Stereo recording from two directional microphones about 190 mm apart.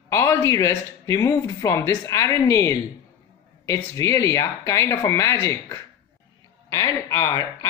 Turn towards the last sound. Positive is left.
turn(degrees=15)  # may be behind; listen again after turning